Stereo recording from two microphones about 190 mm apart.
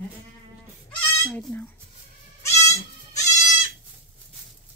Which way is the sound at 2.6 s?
15° left (ahead or behind).